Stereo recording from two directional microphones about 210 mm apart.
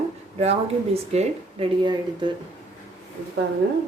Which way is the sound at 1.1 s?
30° right (ahead or behind).